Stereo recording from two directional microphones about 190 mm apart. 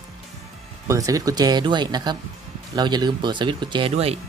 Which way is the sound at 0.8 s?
15° right (ahead or behind).